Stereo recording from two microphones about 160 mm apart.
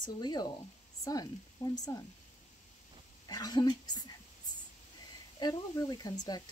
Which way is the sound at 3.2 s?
25° left (ahead or behind).